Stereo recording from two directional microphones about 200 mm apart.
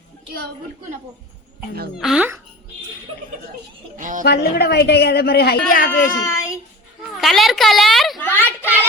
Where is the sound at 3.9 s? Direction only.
40° right (ahead or behind).